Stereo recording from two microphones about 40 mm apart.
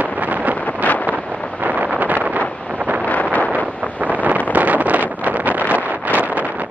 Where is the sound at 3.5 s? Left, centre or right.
Right.